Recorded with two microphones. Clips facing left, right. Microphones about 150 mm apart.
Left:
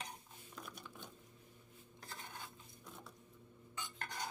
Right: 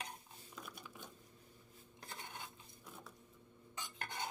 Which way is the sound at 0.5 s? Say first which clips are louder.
Left 1 dB; 5° right (ahead or behind).